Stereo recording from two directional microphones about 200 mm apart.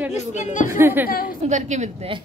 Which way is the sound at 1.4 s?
35° right (ahead or behind).